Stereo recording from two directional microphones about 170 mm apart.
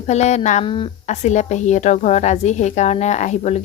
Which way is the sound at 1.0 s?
45° left (ahead or behind).